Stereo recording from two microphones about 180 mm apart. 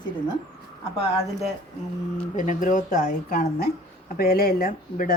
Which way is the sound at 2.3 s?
45° left (ahead or behind).